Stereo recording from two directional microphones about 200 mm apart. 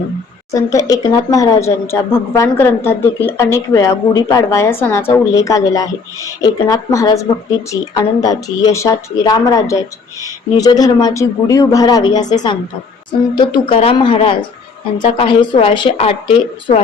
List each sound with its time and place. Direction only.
0.5 s speech: 15° left (ahead or behind)